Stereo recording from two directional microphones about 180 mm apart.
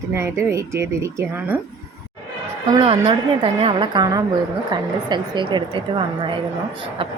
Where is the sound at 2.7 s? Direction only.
25° right (ahead or behind).